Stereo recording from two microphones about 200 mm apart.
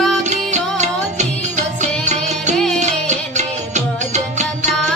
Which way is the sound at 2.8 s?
35° right (ahead or behind).